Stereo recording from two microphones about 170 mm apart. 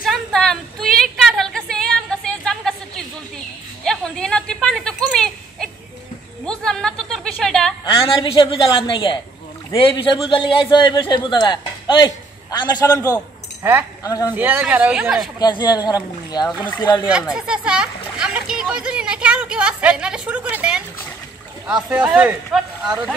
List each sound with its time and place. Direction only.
0.0 s a sound: centre (ahead or behind)
7.8 s a woman's voice: 30° left (ahead or behind)
13.0 s speech: 10° right (ahead or behind)
14.0 s speech: 20° left (ahead or behind)
14.3 s speech: 10° right (ahead or behind)
15.3 s speech: 25° left (ahead or behind)
17.0 s a sound: 5° right (ahead or behind)
21.8 s speech: 5° right (ahead or behind)